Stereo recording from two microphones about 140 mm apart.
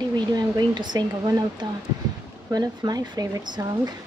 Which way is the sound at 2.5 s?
30° right (ahead or behind).